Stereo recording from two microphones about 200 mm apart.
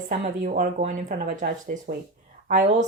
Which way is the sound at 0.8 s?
35° right (ahead or behind).